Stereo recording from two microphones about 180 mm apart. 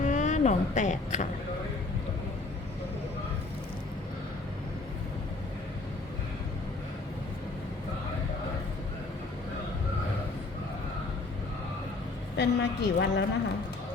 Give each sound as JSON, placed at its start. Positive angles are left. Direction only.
{"t": 0.0, "sound": "speech", "side_deg": 40}
{"t": 12.4, "sound": "a woman's voice", "side_deg": 75}